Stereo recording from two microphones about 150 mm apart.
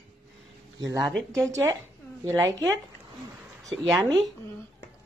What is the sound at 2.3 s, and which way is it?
Speech, 20° right (ahead or behind).